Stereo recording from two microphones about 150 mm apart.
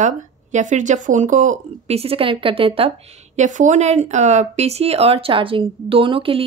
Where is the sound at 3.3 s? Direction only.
55° right (ahead or behind).